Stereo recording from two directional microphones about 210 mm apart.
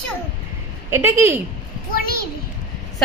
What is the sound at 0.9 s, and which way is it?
Speech, 10° right (ahead or behind).